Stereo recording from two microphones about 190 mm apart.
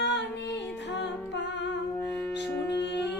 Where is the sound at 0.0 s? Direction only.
65° left (ahead or behind).